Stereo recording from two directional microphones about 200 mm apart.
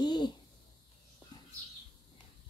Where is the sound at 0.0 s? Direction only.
20° left (ahead or behind).